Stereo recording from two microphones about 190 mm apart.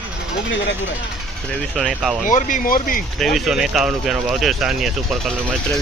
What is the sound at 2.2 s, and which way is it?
Speech, 45° left (ahead or behind).